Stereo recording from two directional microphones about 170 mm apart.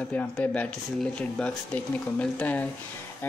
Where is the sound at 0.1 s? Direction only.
10° left (ahead or behind).